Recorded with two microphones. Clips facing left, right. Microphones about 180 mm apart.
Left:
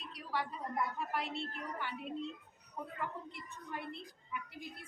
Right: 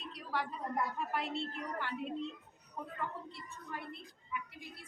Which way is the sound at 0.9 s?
Centre (ahead or behind).